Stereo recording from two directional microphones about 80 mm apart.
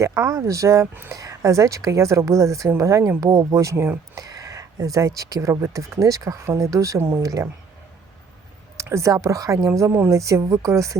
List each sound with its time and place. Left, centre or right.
0.0 s speech: right
3.2 s speech: right
3.5 s speech: right
8.8 s speech: right